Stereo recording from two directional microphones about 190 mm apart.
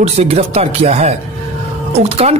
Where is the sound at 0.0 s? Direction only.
35° right (ahead or behind).